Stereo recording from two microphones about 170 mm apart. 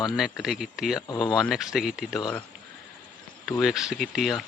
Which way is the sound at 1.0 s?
25° left (ahead or behind).